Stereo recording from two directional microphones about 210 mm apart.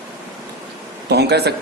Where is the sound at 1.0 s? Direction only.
50° right (ahead or behind).